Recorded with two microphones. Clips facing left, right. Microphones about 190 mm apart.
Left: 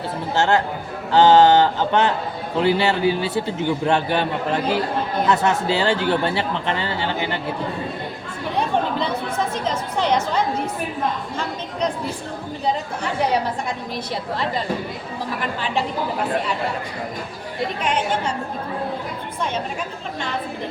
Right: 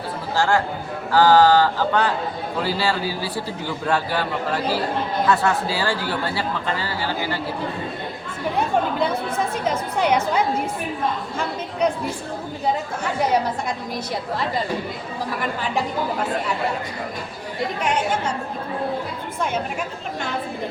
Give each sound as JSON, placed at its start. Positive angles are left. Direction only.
{"t": 0.3, "sound": "a man's voice", "side_deg": 20}
{"t": 8.5, "sound": "chatter", "side_deg": -5}